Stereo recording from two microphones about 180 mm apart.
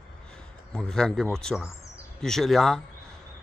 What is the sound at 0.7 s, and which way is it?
Speech, 5° left (ahead or behind).